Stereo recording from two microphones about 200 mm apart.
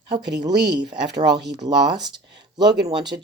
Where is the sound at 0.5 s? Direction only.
55° right (ahead or behind).